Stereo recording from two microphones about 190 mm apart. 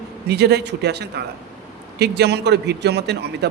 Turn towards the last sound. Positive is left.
turn(degrees=-60)  # may be behind; listen again after turning